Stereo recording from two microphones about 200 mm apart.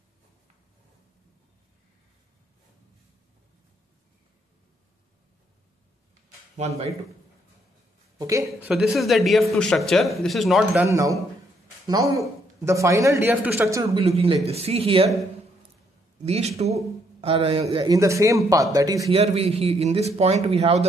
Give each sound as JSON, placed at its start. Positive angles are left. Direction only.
{"t": 6.5, "sound": "a man's voice", "side_deg": -30}
{"t": 8.2, "sound": "speech", "side_deg": -15}
{"t": 8.6, "sound": "speech", "side_deg": -5}
{"t": 12.2, "sound": "speech", "side_deg": -15}
{"t": 13.9, "sound": "a man's voice", "side_deg": -30}
{"t": 16.3, "sound": "a man's voice", "side_deg": -30}
{"t": 19.0, "sound": "a man's voice", "side_deg": -30}